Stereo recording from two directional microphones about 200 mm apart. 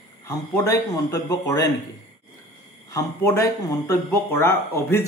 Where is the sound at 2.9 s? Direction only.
15° left (ahead or behind).